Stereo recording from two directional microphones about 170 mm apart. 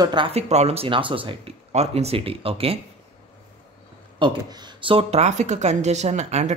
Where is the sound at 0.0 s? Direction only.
30° right (ahead or behind).